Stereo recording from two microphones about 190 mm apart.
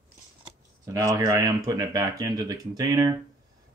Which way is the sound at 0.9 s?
15° right (ahead or behind).